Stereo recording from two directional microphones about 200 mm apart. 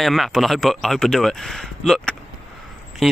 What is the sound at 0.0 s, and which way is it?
A man's voice, centre (ahead or behind).